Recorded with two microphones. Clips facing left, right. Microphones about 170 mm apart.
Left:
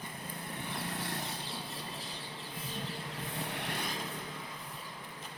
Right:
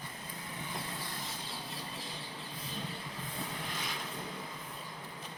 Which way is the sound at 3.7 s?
60° left (ahead or behind).